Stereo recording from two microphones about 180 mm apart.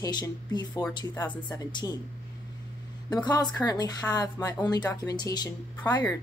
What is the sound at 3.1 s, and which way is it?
Speech, 20° left (ahead or behind).